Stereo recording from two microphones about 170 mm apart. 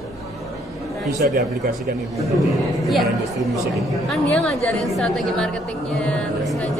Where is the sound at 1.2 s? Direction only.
60° right (ahead or behind).